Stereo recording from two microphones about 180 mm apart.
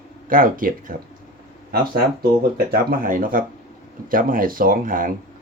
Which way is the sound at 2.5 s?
55° right (ahead or behind).